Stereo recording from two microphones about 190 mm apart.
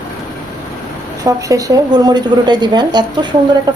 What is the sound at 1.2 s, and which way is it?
Speech, 15° right (ahead or behind).